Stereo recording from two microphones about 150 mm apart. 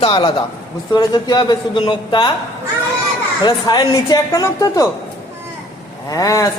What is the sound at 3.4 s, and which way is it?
A woman's voice, 30° left (ahead or behind).